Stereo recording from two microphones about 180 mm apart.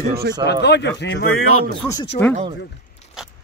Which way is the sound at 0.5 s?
70° left (ahead or behind).